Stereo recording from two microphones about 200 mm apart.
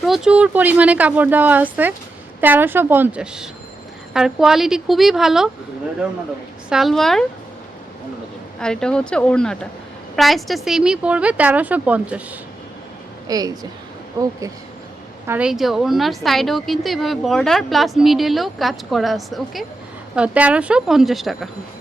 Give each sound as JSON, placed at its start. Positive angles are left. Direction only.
{"t": 0.0, "sound": "a woman's voice", "side_deg": 0}
{"t": 6.7, "sound": "a woman's voice", "side_deg": 0}
{"t": 8.6, "sound": "a woman's voice", "side_deg": 5}
{"t": 13.2, "sound": "a woman's voice", "side_deg": -20}
{"t": 15.3, "sound": "a woman's voice", "side_deg": -5}